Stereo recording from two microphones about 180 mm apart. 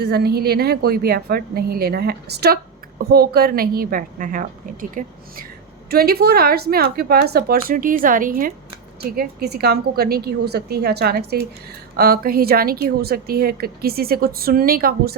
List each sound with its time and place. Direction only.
0.0 s a woman's voice: 65° right (ahead or behind)